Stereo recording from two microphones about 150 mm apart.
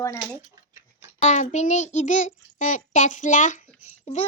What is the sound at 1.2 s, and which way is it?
Child singing, 50° left (ahead or behind).